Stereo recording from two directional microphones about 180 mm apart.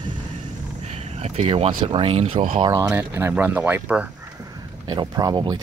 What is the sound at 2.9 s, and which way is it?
Speech, 10° right (ahead or behind).